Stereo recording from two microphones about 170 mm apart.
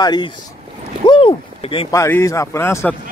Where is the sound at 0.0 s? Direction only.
25° left (ahead or behind).